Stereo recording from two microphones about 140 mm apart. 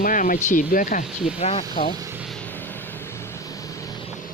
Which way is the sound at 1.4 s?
45° left (ahead or behind).